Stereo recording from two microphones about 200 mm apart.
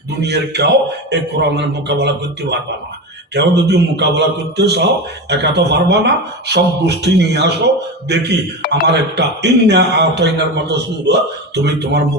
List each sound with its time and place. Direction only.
0.2 s a man's voice: 55° right (ahead or behind)